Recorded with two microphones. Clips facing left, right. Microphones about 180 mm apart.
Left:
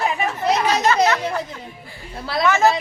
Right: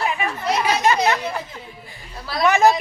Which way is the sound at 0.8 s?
15° right (ahead or behind).